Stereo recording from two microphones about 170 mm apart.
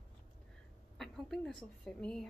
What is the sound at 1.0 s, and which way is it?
A woman's voice, centre (ahead or behind).